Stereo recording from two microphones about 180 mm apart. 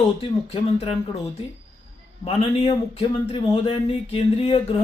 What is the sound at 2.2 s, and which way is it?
Speech, 35° left (ahead or behind).